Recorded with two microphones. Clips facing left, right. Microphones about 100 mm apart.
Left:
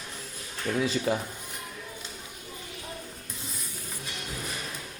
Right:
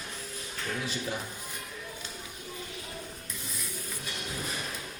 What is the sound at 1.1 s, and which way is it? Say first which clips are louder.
Speech: left 8 dB; 90° left.